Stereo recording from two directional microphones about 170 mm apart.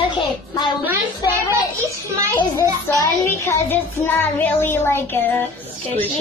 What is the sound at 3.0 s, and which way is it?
Music, 15° left (ahead or behind).